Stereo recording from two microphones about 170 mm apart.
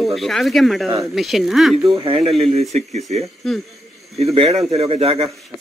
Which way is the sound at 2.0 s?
35° right (ahead or behind).